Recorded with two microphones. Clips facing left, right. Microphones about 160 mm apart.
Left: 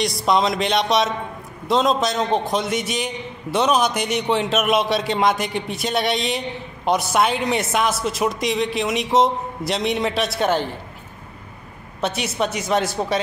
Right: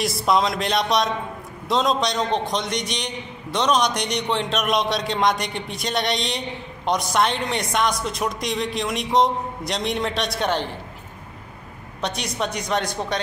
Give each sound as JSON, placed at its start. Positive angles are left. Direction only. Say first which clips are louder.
{"t": 0.0, "sound": "a man's voice", "louder": "left 1 dB", "side_deg": 0}
{"t": 12.0, "sound": "a man's voice", "louder": "left 4 dB", "side_deg": 5}